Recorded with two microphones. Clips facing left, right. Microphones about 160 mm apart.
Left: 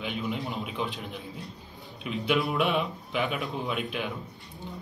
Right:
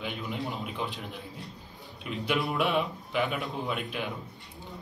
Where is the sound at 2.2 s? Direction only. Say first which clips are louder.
Left 2 dB; centre (ahead or behind).